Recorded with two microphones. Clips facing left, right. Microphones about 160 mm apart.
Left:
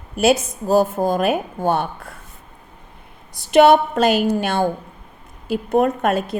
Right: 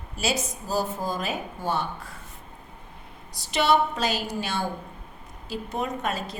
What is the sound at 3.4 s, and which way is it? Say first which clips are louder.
A woman's voice: left 10 dB; 50° left (ahead or behind).